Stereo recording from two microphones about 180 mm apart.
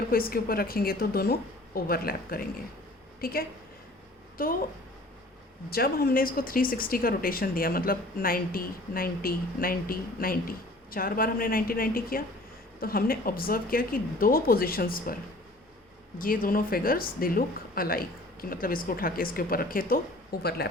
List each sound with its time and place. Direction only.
0.1 s a woman's voice: 55° left (ahead or behind)
5.7 s a woman's voice: 60° left (ahead or behind)